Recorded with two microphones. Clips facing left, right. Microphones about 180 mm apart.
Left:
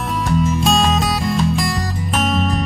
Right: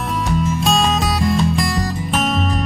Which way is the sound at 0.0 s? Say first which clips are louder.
Left 1 dB; centre (ahead or behind).